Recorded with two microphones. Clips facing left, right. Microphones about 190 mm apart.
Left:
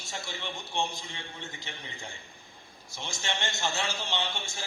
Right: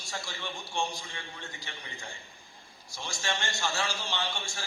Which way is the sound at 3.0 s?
20° left (ahead or behind).